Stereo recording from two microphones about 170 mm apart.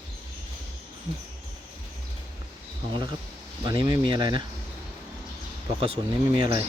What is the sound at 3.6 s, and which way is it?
Speech, 25° right (ahead or behind).